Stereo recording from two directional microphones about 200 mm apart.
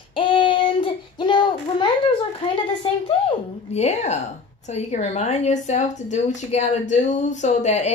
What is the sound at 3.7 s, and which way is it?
A woman's voice, 35° left (ahead or behind).